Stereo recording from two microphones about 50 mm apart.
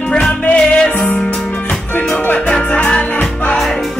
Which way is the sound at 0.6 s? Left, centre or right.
Centre.